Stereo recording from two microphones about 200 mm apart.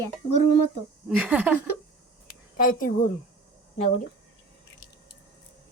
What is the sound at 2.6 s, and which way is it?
Speech, 45° left (ahead or behind).